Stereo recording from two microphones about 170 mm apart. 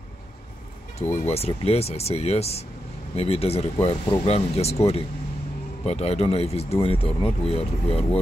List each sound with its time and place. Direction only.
0.9 s speech: 40° left (ahead or behind)